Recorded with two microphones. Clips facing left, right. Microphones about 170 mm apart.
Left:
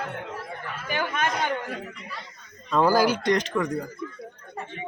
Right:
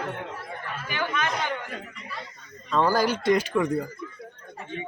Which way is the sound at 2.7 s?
5° left (ahead or behind).